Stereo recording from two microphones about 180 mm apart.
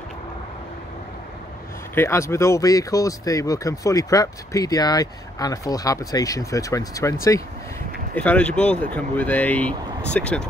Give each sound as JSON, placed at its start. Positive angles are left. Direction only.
{"t": 2.0, "sound": "speech", "side_deg": 15}
{"t": 8.1, "sound": "speech", "side_deg": 10}